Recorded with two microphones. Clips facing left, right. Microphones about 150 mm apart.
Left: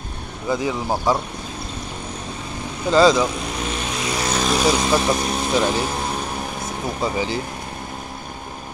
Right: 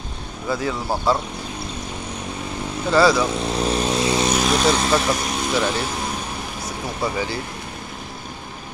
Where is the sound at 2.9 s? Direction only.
20° left (ahead or behind).